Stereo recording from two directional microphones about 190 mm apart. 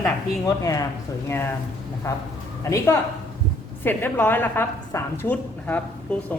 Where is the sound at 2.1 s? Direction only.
15° left (ahead or behind).